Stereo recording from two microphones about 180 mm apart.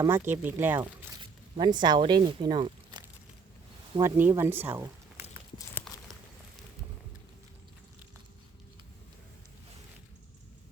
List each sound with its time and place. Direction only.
0.0 s speech: 15° right (ahead or behind)
1.2 s speech: 25° right (ahead or behind)
4.0 s speech: 15° right (ahead or behind)